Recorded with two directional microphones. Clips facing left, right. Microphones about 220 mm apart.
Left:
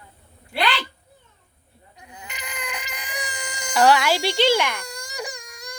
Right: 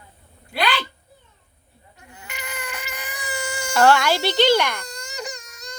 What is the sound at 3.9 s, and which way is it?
Baby cry, 5° left (ahead or behind).